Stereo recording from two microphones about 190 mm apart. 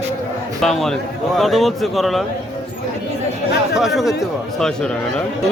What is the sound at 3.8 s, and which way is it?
Speech, centre (ahead or behind).